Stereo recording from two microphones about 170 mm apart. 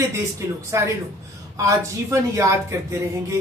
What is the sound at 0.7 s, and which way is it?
A woman's voice, 15° right (ahead or behind).